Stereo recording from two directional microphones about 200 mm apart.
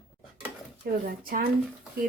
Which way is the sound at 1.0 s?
45° right (ahead or behind).